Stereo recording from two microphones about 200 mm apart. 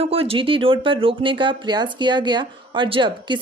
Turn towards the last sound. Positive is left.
turn(degrees=-25)  # may be behind; listen again after turning